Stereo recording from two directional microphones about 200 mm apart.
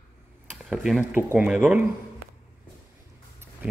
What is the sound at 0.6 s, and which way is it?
Speech, centre (ahead or behind).